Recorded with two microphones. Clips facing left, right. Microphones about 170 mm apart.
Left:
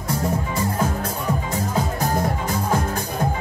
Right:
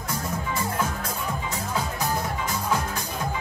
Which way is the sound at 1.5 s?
45° left (ahead or behind).